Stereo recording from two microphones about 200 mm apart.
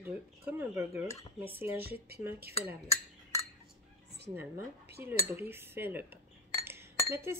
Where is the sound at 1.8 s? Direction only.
50° right (ahead or behind).